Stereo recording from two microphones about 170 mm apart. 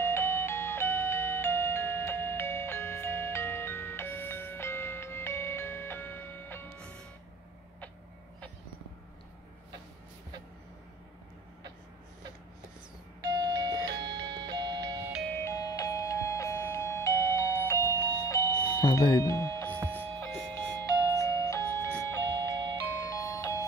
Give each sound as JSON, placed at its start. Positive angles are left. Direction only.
{"t": 0.0, "sound": "music", "side_deg": 15}
{"t": 13.6, "sound": "music", "side_deg": -25}
{"t": 13.9, "sound": "music", "side_deg": -90}
{"t": 14.3, "sound": "music", "side_deg": -25}
{"t": 15.2, "sound": "music", "side_deg": 15}
{"t": 18.0, "sound": "doorbell", "side_deg": 20}
{"t": 19.9, "sound": "music", "side_deg": 15}